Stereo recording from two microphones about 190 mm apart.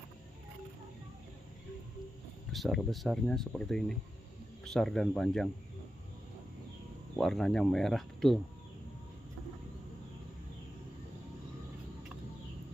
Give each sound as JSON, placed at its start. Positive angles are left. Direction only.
{"t": 2.5, "sound": "speech", "side_deg": 0}
{"t": 7.2, "sound": "speech", "side_deg": 0}